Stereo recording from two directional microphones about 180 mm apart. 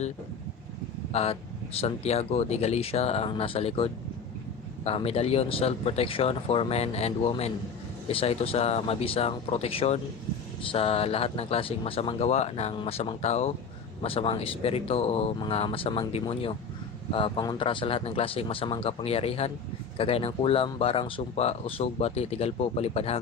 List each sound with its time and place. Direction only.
1.1 s speech: 35° left (ahead or behind)